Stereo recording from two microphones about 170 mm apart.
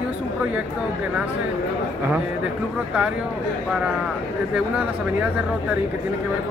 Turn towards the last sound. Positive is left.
turn(degrees=-5)  # may be behind; listen again after turning